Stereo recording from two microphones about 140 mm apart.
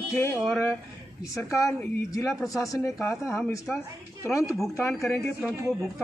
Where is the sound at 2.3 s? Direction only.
Centre (ahead or behind).